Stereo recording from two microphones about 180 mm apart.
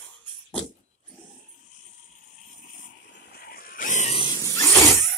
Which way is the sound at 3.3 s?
55° left (ahead or behind).